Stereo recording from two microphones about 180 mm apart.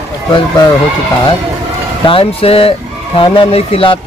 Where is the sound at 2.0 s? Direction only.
30° left (ahead or behind).